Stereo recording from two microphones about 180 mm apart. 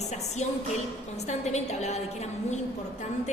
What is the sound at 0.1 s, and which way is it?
A woman's voice, 40° left (ahead or behind).